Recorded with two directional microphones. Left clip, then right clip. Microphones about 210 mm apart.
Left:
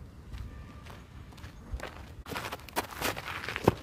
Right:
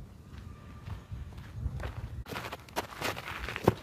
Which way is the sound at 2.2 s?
30° left (ahead or behind).